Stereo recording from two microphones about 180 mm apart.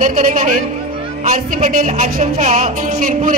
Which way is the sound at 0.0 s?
45° right (ahead or behind).